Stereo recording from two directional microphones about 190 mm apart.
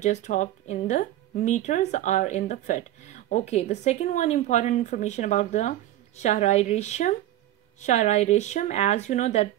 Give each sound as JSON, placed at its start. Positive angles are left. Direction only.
{"t": 0.0, "sound": "speech", "side_deg": 40}